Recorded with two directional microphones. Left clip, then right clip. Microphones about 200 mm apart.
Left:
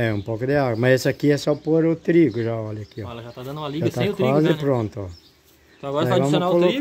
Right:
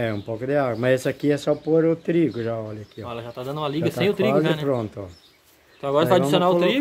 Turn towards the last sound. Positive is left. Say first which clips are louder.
# right 2 dB
turn(degrees=-10)  # may be behind; listen again after turning